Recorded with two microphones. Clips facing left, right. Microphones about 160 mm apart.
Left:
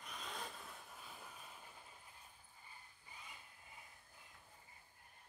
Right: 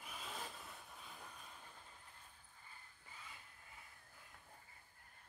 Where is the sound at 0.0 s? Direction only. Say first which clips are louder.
Left 1 dB; 5° right (ahead or behind).